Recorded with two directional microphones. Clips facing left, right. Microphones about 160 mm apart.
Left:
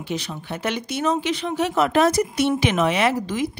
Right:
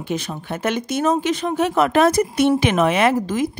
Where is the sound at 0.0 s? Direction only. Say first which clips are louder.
Right 3 dB; 50° right (ahead or behind).